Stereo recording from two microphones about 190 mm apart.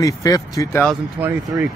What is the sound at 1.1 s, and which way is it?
Speech, 10° right (ahead or behind).